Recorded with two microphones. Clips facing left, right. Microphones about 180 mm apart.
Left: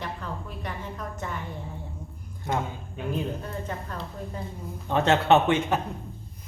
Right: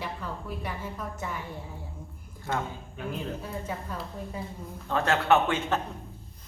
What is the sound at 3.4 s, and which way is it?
A woman's voice, 5° right (ahead or behind).